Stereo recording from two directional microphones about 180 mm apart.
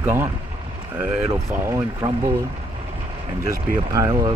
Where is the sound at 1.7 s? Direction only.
20° right (ahead or behind).